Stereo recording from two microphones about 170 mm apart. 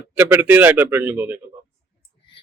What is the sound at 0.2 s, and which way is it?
A man's voice, 10° right (ahead or behind).